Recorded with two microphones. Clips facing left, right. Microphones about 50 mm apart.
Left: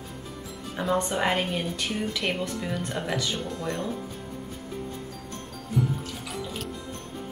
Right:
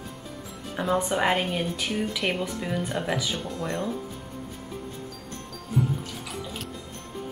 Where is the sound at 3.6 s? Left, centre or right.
Centre.